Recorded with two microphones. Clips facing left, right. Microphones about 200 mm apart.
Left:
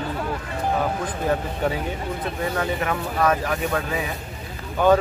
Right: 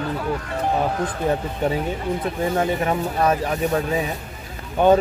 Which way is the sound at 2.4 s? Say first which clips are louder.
Right 3 dB; 25° right (ahead or behind).